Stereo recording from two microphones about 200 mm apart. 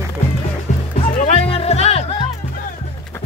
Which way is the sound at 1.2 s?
30° left (ahead or behind).